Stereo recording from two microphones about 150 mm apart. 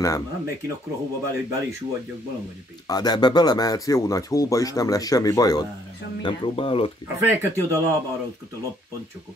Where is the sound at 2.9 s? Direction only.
25° left (ahead or behind).